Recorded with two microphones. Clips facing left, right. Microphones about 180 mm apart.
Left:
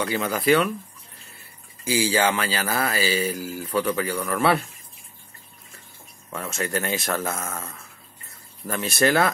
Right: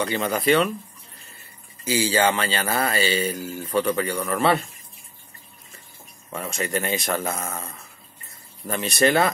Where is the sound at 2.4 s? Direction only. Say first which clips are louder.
Right 1 dB; 25° right (ahead or behind).